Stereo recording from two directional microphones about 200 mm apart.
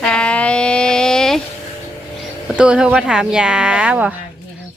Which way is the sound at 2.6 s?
5° right (ahead or behind).